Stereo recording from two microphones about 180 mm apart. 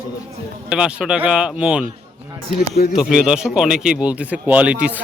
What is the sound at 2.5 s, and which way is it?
Speech, 60° left (ahead or behind).